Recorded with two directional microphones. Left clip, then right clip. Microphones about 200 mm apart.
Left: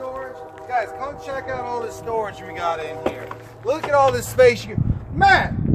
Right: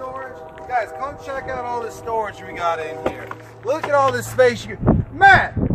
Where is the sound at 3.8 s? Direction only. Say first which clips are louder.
Left 1 dB; 20° left (ahead or behind).